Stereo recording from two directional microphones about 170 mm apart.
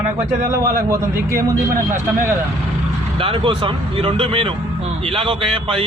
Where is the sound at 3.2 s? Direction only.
30° right (ahead or behind).